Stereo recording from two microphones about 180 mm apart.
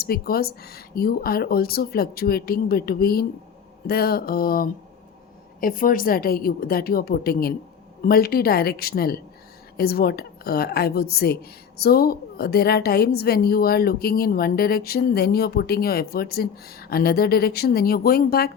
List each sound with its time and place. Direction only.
0.0 s a woman's voice: 55° left (ahead or behind)